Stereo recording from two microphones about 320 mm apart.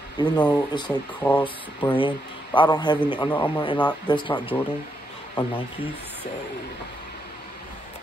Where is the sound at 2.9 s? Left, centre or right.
Centre.